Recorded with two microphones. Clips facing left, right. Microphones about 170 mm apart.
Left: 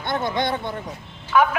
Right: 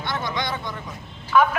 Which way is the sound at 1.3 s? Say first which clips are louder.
Even; 5° left (ahead or behind).